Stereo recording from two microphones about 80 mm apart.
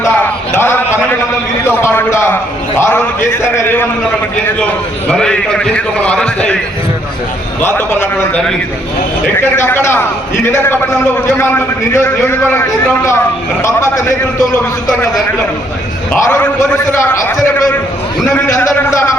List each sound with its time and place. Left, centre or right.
0.2 s a sound: left
1.8 s a man's voice: left
5.0 s a man's voice: centre
7.6 s a man's voice: left
9.4 s a man's voice: left
13.6 s a man's voice: left
16.1 s a man's voice: left
18.4 s a man's voice: left